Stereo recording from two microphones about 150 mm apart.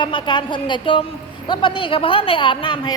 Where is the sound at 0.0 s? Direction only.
35° left (ahead or behind).